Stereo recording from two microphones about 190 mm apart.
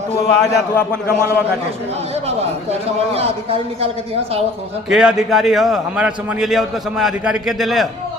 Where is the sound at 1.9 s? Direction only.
35° right (ahead or behind).